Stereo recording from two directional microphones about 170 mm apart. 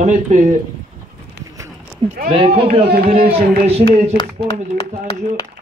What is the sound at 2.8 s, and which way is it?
Speech, 65° right (ahead or behind).